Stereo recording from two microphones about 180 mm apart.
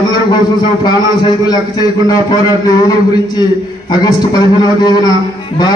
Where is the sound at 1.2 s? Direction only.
20° left (ahead or behind).